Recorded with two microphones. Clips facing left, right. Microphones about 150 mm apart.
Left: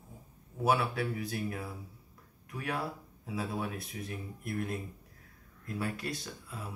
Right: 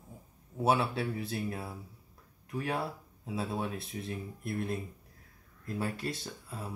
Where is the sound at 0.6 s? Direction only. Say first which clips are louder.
Right 1 dB; 25° right (ahead or behind).